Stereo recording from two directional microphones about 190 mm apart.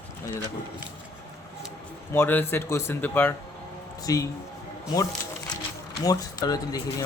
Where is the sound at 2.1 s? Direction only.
10° left (ahead or behind).